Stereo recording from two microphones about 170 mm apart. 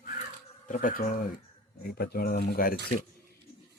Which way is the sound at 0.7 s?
55° left (ahead or behind).